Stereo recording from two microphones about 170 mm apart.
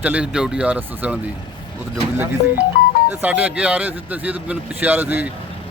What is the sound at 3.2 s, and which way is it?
Speech, 10° right (ahead or behind).